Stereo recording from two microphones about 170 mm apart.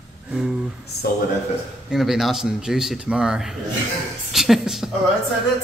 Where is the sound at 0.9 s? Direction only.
70° left (ahead or behind).